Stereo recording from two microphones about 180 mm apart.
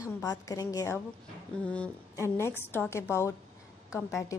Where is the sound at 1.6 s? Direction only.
5° left (ahead or behind).